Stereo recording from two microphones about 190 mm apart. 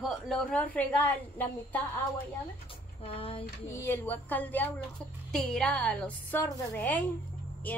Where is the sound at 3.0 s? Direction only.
30° left (ahead or behind).